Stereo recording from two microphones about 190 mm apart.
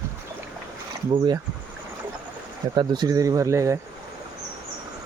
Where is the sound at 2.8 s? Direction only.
20° right (ahead or behind).